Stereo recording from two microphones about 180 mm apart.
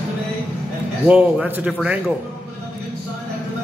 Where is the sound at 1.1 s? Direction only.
5° right (ahead or behind).